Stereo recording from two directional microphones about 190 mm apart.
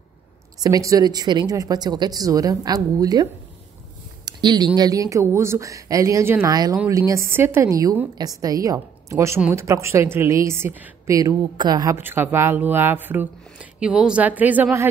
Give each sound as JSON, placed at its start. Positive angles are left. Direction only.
{"t": 0.6, "sound": "a woman's voice", "side_deg": -20}
{"t": 4.3, "sound": "a woman's voice", "side_deg": -20}